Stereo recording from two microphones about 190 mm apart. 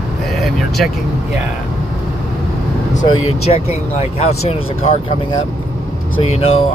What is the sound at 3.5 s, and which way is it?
Speech, 35° left (ahead or behind).